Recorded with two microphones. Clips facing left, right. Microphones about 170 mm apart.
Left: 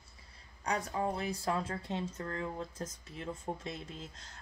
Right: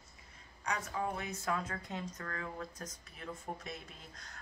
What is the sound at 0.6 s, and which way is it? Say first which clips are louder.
Speech: left 3 dB; 35° left (ahead or behind).